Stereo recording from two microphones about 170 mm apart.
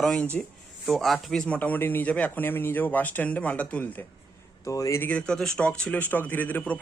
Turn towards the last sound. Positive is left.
turn(degrees=10)  # may be behind; listen again after turning